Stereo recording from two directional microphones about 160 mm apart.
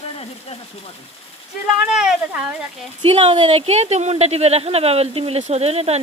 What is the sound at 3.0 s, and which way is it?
Speech, 35° right (ahead or behind).